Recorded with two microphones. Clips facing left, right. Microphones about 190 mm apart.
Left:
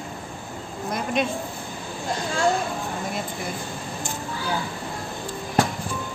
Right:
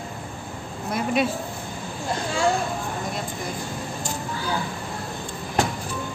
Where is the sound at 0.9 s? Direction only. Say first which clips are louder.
Right 2 dB; 5° right (ahead or behind).